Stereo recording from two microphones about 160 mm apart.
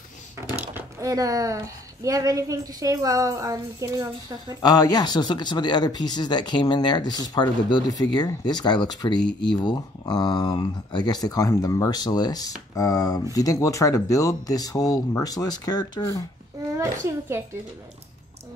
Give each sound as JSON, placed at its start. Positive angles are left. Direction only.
{"t": 0.6, "sound": "speech", "side_deg": -15}
{"t": 4.6, "sound": "speech", "side_deg": 25}
{"t": 16.7, "sound": "speech", "side_deg": -20}